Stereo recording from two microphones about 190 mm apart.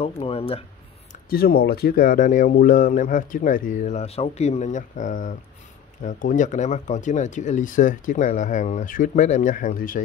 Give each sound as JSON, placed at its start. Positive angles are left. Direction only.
{"t": 0.0, "sound": "speech", "side_deg": 30}
{"t": 1.3, "sound": "speech", "side_deg": 50}